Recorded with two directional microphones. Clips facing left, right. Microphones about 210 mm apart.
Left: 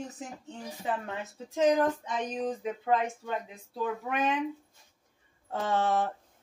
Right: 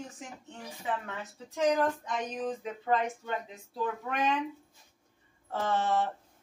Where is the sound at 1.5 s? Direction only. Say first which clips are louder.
Left 3 dB; 20° left (ahead or behind).